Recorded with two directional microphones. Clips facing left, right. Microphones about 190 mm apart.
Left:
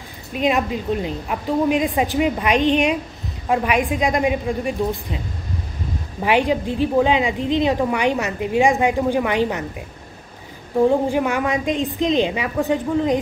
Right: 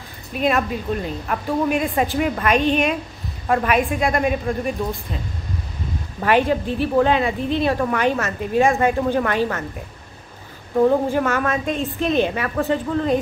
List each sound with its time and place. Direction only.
0.4 s speech: 15° left (ahead or behind)
6.2 s speech: 15° left (ahead or behind)
10.8 s speech: 15° left (ahead or behind)